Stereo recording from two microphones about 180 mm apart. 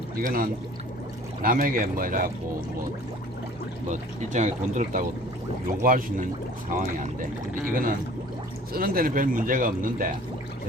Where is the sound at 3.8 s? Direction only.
45° right (ahead or behind).